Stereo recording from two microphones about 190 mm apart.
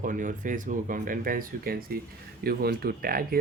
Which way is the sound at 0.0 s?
45° right (ahead or behind).